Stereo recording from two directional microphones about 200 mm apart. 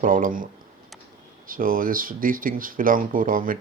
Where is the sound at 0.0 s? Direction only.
40° right (ahead or behind).